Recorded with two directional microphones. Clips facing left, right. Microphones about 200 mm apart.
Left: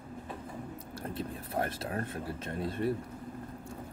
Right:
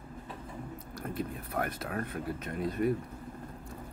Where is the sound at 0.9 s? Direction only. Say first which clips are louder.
Right 2 dB; 30° left (ahead or behind).